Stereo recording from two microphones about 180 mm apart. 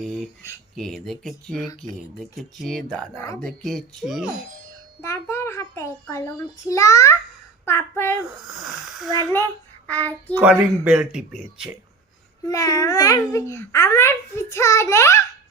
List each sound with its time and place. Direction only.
0.8 s speech: centre (ahead or behind)
5.0 s a child's voice: 15° left (ahead or behind)
8.5 s speech: centre (ahead or behind)
9.8 s a child's voice: 10° left (ahead or behind)
10.4 s speech: 5° right (ahead or behind)
12.5 s a child's voice: 20° left (ahead or behind)